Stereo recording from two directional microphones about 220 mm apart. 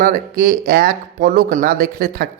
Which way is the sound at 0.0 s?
40° right (ahead or behind).